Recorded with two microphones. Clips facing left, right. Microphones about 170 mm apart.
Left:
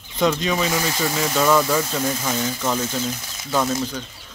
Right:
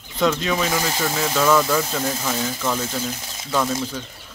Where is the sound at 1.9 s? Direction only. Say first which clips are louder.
Left 1 dB; 5° right (ahead or behind).